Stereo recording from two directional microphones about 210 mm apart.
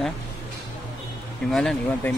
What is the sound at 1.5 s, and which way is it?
Speech, centre (ahead or behind).